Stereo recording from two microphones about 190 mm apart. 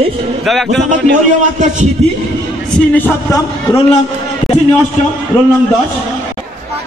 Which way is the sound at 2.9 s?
10° left (ahead or behind).